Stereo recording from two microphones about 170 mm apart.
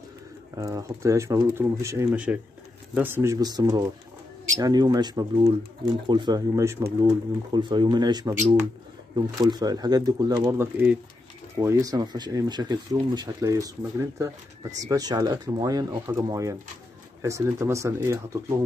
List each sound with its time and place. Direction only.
0.6 s speech: 20° right (ahead or behind)
2.1 s speech: 5° right (ahead or behind)
7.5 s speech: 25° right (ahead or behind)